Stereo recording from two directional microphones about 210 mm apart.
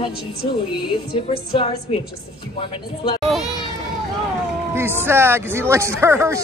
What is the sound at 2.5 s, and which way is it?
Speech, 20° left (ahead or behind).